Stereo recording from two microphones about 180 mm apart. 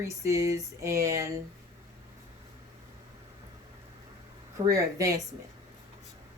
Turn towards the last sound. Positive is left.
turn(degrees=-20)  # may be behind; listen again after turning